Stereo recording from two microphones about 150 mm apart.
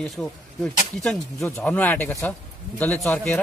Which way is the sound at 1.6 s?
10° left (ahead or behind).